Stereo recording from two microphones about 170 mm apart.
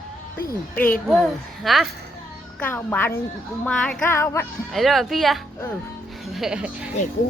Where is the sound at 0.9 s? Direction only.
Centre (ahead or behind).